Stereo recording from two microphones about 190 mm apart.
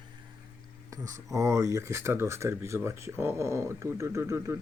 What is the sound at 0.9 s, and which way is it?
Speech, 15° right (ahead or behind).